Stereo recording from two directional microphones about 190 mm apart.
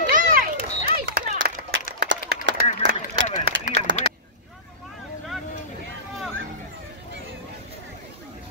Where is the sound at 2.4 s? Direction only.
75° right (ahead or behind).